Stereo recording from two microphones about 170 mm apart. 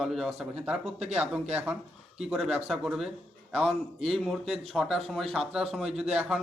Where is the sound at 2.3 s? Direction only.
5° right (ahead or behind).